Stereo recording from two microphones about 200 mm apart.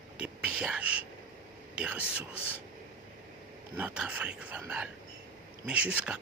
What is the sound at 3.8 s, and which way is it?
Speech, 5° right (ahead or behind).